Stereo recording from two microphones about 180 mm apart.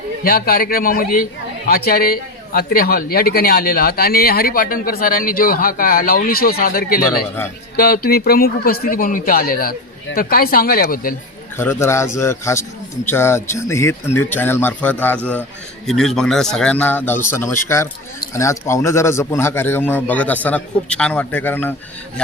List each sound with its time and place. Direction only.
0.3 s a man's voice: 55° left (ahead or behind)
11.5 s a man's voice: 15° left (ahead or behind)